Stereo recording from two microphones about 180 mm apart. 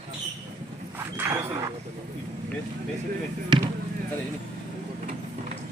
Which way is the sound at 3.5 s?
25° right (ahead or behind).